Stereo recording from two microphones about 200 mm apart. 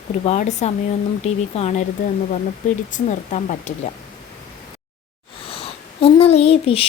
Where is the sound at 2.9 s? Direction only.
40° left (ahead or behind).